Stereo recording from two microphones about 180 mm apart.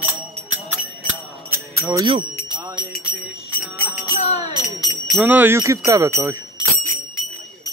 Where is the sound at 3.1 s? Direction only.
10° right (ahead or behind).